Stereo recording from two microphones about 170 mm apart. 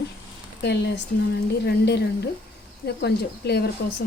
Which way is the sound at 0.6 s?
80° left.